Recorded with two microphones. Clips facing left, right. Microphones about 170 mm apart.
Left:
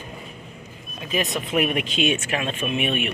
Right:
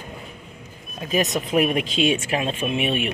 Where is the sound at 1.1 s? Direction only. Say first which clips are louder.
Right 3 dB; 40° right (ahead or behind).